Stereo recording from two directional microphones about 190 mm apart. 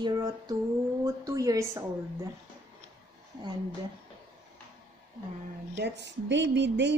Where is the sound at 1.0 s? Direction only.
20° right (ahead or behind).